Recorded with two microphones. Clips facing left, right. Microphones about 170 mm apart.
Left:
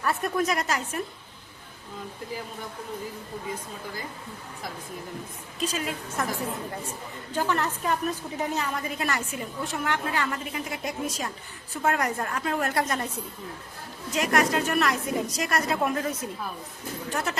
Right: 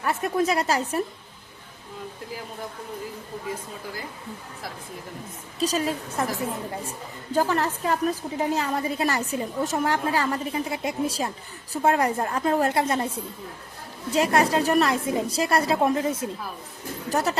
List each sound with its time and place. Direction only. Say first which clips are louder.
0.0 s a woman's voice: right 2 dB; 25° right (ahead or behind)
5.5 s a woman's voice: right 5 dB; 35° right (ahead or behind)
7.3 s a woman's voice: right 4 dB; 35° right (ahead or behind)
17.1 s a woman's voice: right 6 dB; 35° right (ahead or behind)